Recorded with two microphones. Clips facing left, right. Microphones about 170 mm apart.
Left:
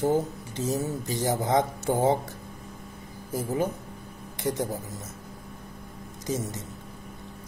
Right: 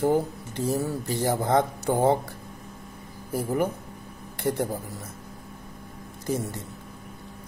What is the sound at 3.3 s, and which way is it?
Speech, 15° right (ahead or behind).